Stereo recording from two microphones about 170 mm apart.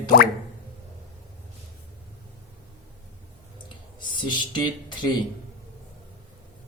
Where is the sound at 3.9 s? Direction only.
25° left (ahead or behind).